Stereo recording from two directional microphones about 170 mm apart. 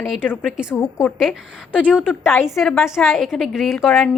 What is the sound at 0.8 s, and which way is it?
Speech, 15° left (ahead or behind).